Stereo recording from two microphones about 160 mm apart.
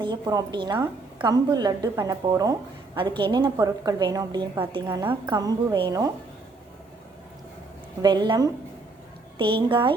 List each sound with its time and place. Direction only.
0.0 s a woman's voice: 25° right (ahead or behind)
4.9 s a woman's voice: 15° right (ahead or behind)
5.3 s a woman's voice: 25° right (ahead or behind)
8.0 s a woman's voice: 25° right (ahead or behind)